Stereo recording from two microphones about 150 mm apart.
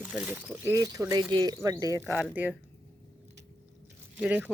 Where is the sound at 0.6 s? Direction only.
20° right (ahead or behind).